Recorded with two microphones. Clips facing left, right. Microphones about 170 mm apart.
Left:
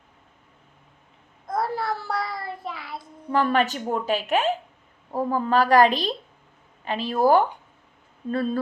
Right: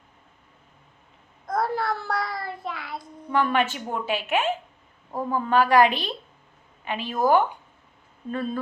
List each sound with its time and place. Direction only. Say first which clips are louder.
1.5 s child singing: right 1 dB; centre (ahead or behind)
3.0 s a woman's voice: left 1 dB; 35° left (ahead or behind)